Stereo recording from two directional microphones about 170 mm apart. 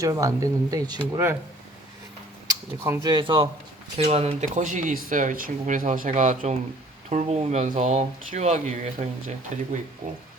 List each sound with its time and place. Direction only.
0.0 s speech: 20° right (ahead or behind)
2.8 s speech: 20° right (ahead or behind); by 10.2 s 45° right (ahead or behind)